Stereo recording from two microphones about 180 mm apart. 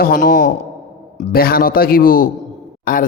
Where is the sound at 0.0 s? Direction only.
50° left (ahead or behind).